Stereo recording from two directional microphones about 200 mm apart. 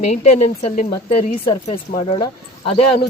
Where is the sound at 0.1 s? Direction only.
35° left (ahead or behind).